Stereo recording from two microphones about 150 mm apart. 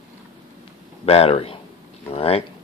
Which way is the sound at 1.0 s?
40° left (ahead or behind).